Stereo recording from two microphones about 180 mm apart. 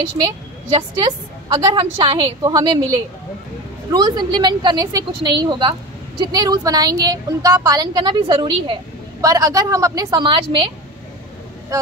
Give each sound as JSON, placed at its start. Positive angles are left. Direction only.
{"t": 0.2, "sound": "a woman's voice", "side_deg": -30}